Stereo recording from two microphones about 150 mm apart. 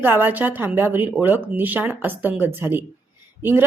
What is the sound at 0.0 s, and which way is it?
A woman's voice, 15° right (ahead or behind).